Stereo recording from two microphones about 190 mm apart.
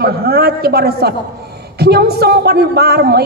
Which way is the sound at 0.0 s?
55° right (ahead or behind).